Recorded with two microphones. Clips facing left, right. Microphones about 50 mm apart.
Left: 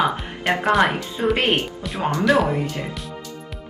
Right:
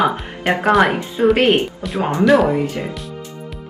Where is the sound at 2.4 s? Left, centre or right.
Right.